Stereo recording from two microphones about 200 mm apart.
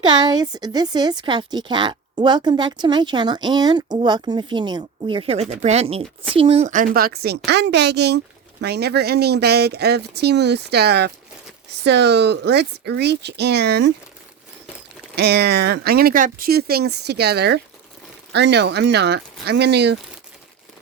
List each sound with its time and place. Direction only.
0.0 s a woman's voice: 20° right (ahead or behind)
6.7 s speech: 45° right (ahead or behind)
15.1 s speech: 55° right (ahead or behind)